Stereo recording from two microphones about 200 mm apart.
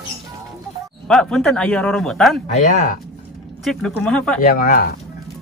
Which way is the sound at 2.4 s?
35° left (ahead or behind).